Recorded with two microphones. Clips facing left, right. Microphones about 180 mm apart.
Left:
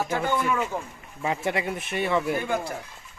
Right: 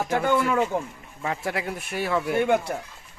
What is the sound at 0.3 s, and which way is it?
Speech, 65° right (ahead or behind).